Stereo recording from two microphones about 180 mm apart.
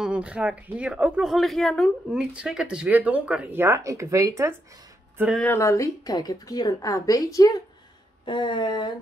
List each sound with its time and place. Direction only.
0.0 s a woman's voice: 5° right (ahead or behind)
5.4 s a woman's voice: 15° left (ahead or behind)